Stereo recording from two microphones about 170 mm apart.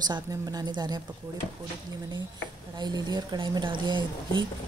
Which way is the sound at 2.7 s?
25° right (ahead or behind).